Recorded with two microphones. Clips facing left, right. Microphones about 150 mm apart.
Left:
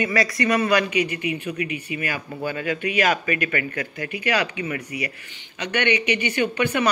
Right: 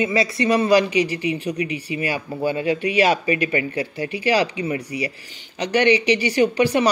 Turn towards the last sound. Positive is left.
turn(degrees=-35)  # may be behind; listen again after turning